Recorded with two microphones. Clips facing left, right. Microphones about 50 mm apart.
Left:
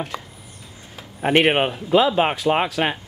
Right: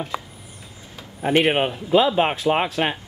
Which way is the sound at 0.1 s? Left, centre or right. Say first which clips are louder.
Right 3 dB; centre.